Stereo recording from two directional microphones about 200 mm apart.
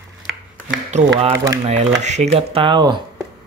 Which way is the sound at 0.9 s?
35° right (ahead or behind).